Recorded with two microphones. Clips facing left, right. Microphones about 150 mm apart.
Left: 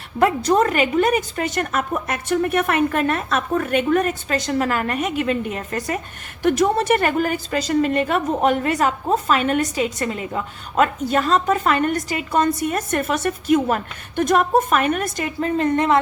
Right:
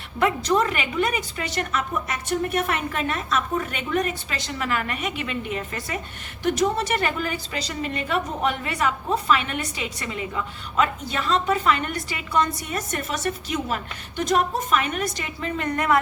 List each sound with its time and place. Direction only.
0.2 s a woman's voice: 45° left (ahead or behind)
6.4 s a woman's voice: 55° left (ahead or behind)
15.6 s speech: 25° left (ahead or behind)